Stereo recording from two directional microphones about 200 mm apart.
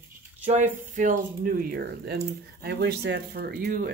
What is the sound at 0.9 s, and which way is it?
Speech, 40° right (ahead or behind).